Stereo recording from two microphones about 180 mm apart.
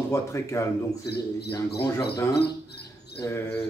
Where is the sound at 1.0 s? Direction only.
65° left (ahead or behind).